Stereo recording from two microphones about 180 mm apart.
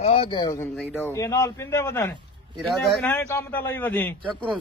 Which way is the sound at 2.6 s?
5° left (ahead or behind).